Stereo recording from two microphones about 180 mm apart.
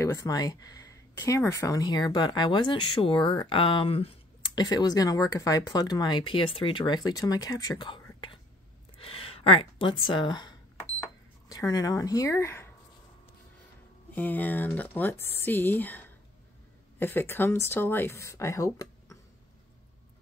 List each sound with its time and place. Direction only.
0.0 s speech: 15° left (ahead or behind)
11.0 s cash register: 20° left (ahead or behind)
14.1 s speech: 10° left (ahead or behind)